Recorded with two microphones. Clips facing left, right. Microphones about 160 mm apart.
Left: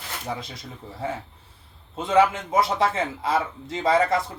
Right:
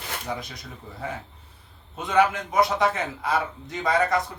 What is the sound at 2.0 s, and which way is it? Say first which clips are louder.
A man's voice: left 2 dB; 25° left (ahead or behind).